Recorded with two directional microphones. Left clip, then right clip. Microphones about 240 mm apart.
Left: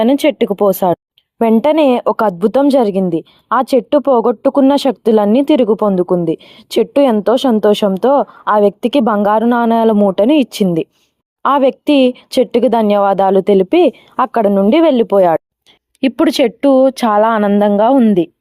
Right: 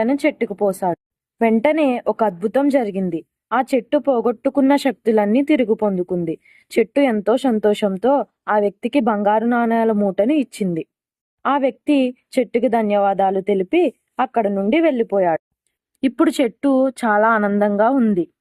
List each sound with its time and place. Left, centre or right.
0.0 s speech: left